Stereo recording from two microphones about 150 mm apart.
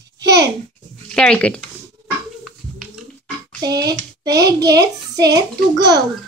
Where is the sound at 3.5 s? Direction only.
25° right (ahead or behind).